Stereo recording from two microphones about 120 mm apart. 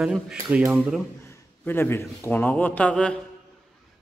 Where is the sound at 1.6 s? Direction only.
15° left (ahead or behind).